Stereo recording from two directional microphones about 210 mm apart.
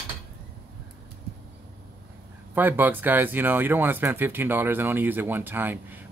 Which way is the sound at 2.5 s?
10° right (ahead or behind).